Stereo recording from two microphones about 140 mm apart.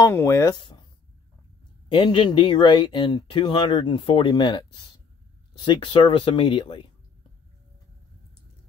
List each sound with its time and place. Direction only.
0.0 s speech: 20° left (ahead or behind)
0.6 s a sound: 35° left (ahead or behind)
1.9 s speech: 35° left (ahead or behind)